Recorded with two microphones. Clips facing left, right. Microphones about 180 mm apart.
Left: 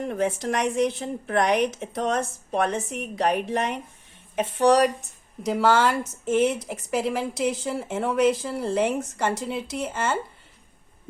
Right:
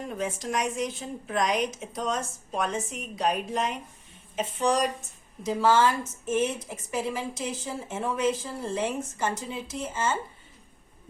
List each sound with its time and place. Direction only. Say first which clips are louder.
0.0 s a woman's voice: left 6 dB; 65° left (ahead or behind)